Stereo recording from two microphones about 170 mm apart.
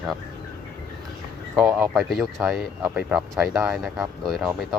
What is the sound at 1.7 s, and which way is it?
Speech, 10° right (ahead or behind).